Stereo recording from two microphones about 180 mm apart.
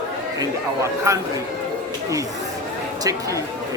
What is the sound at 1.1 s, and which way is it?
Speech, 15° right (ahead or behind).